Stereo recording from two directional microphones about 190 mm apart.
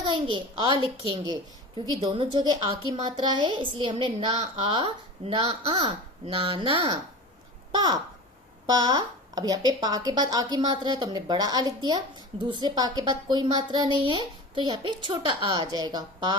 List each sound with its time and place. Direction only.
0.0 s a child's voice: 25° right (ahead or behind)